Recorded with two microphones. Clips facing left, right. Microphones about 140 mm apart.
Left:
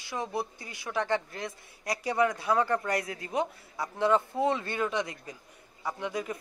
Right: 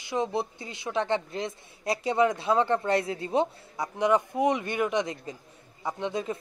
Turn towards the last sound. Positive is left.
turn(degrees=-25)  # may be behind; listen again after turning